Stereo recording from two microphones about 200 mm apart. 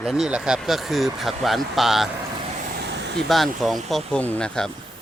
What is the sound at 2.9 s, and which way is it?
Vehicle, 60° right (ahead or behind).